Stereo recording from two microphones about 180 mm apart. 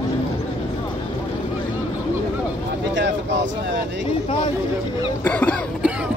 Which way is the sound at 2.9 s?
80° right.